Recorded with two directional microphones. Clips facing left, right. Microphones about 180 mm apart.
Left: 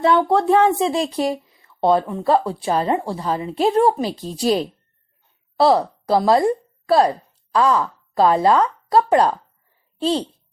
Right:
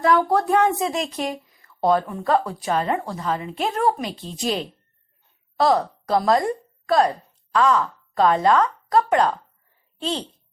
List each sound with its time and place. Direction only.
0.0 s a woman's voice: 25° left (ahead or behind)